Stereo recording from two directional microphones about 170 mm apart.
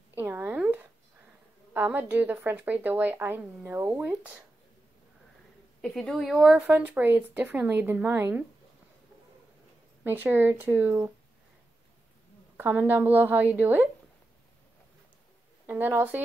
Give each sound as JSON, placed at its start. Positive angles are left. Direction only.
{"t": 0.1, "sound": "a sound", "side_deg": -10}
{"t": 1.7, "sound": "a woman's voice", "side_deg": -10}
{"t": 5.8, "sound": "a woman's voice", "side_deg": 5}
{"t": 10.0, "sound": "a woman's voice", "side_deg": -10}
{"t": 12.5, "sound": "a woman's voice", "side_deg": -15}
{"t": 15.6, "sound": "a woman's voice", "side_deg": -15}